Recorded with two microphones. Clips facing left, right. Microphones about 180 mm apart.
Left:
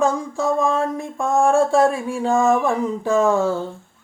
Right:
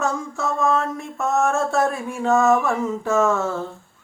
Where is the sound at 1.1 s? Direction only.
15° left (ahead or behind).